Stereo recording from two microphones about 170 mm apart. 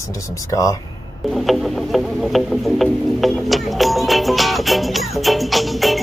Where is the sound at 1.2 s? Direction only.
Centre (ahead or behind).